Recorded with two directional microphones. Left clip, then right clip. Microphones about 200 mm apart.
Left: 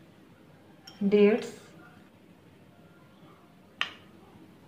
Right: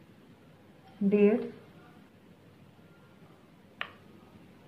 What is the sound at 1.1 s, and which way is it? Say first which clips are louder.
Speech: left 3 dB; 5° left (ahead or behind).